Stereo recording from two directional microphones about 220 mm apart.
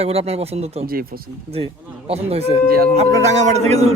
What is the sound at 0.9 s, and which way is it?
Speech, 40° right (ahead or behind).